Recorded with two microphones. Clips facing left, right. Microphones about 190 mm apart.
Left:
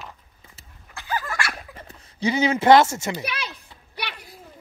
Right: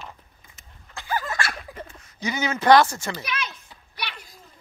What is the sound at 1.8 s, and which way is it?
Speech, 30° left (ahead or behind).